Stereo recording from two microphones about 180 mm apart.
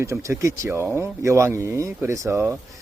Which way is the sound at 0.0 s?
15° right (ahead or behind).